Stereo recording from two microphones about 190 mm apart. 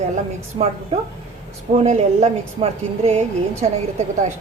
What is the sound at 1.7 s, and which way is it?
Speech, 35° right (ahead or behind).